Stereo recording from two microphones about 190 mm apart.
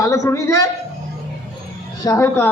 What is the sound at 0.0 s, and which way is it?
Speech, 15° left (ahead or behind).